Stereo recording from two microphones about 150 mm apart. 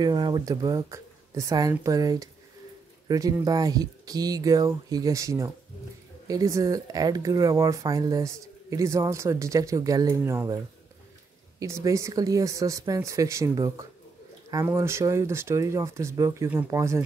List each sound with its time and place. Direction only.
0.0 s speech: 25° right (ahead or behind)
11.6 s speech: 20° right (ahead or behind)